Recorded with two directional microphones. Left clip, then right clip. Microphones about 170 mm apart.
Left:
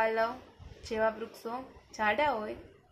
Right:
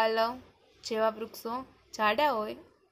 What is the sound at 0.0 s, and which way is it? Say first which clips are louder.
A woman's voice: right 2 dB; 40° right (ahead or behind).